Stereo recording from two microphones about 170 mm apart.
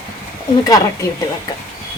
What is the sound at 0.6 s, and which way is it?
Speech, 20° left (ahead or behind).